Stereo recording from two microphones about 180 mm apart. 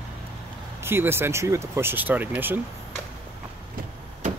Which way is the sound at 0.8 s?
15° right (ahead or behind).